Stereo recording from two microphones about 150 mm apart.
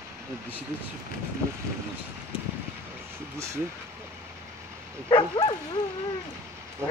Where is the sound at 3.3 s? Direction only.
20° right (ahead or behind).